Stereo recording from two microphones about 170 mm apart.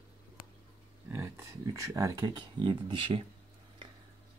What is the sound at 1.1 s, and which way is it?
Speech, 15° right (ahead or behind).